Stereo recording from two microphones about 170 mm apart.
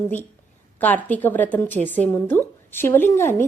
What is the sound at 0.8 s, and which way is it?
A woman's voice, 10° left (ahead or behind).